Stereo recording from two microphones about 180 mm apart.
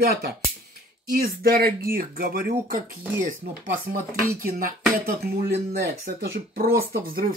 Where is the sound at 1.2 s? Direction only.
55° right (ahead or behind).